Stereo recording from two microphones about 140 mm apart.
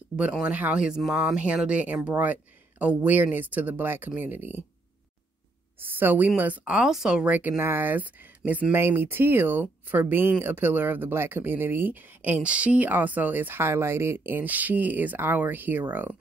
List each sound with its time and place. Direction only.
0.1 s speech: 10° right (ahead or behind)
5.8 s speech: 15° right (ahead or behind)